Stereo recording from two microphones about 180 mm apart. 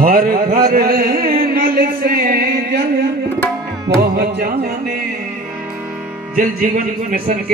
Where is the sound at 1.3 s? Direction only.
55° right (ahead or behind).